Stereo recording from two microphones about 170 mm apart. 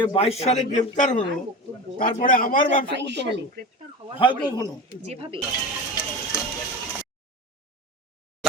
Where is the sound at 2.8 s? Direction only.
90° right.